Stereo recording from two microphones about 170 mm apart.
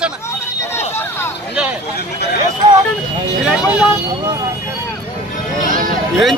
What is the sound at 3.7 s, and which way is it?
Speech, 10° right (ahead or behind).